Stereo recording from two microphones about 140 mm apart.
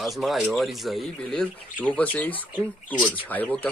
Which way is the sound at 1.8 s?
10° left (ahead or behind).